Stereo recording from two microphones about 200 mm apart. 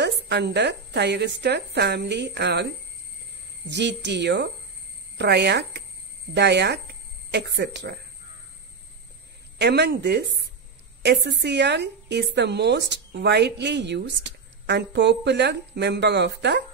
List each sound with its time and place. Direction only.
0.0 s a woman's voice: 55° right (ahead or behind)
9.6 s a woman's voice: 55° right (ahead or behind)